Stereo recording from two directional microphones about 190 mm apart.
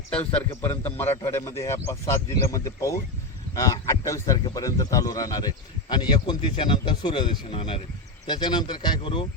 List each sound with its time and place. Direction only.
0.1 s a man's voice: 10° left (ahead or behind); by 9.2 s 25° left (ahead or behind)